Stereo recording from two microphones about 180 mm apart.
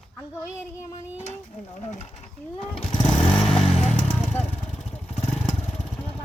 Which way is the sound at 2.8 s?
25° left (ahead or behind).